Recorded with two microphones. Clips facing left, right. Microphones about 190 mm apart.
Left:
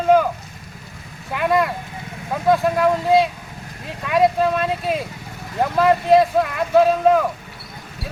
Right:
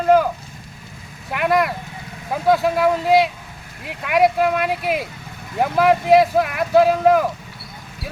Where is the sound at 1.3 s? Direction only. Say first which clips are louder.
Even; 5° right (ahead or behind).